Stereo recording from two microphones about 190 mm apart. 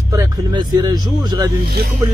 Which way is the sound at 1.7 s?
55° right (ahead or behind).